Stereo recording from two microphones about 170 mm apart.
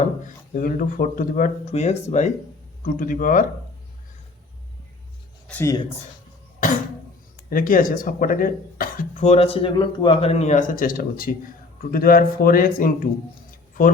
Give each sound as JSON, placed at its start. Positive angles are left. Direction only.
{"t": 0.0, "sound": "speech", "side_deg": 50}
{"t": 2.8, "sound": "speech", "side_deg": 50}
{"t": 5.5, "sound": "speech", "side_deg": 10}
{"t": 6.6, "sound": "cough", "side_deg": 50}
{"t": 7.5, "sound": "speech", "side_deg": 55}